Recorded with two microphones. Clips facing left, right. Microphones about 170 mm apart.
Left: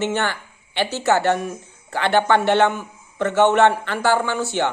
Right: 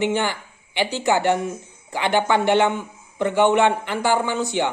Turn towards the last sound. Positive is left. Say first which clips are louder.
# even
turn(degrees=-15)  # may be behind; listen again after turning